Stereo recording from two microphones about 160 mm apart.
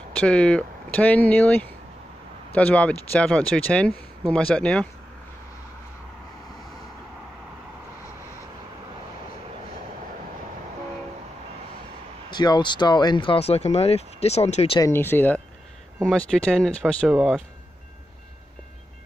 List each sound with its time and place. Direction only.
0.2 s speech: 5° left (ahead or behind)
12.3 s speech: 25° left (ahead or behind)
14.8 s speech: 15° left (ahead or behind)